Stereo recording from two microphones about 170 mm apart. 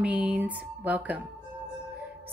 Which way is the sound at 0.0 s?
5° right (ahead or behind).